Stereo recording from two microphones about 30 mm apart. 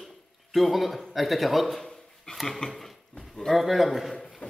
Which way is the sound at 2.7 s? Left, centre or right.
Centre.